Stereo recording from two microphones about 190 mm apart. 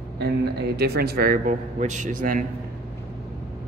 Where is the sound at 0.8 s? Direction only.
55° right (ahead or behind).